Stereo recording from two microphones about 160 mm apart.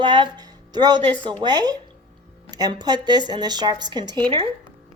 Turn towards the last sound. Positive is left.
turn(degrees=-30)  # may be behind; listen again after turning